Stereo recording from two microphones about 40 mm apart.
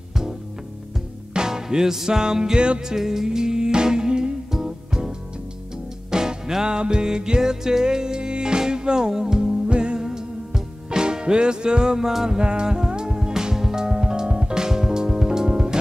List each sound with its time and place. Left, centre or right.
1.3 s music: centre
6.1 s music: centre
9.7 s music: right
9.9 s music: centre
12.4 s music: right